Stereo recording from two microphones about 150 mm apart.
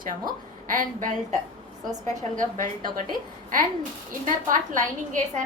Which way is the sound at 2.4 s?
65° right (ahead or behind).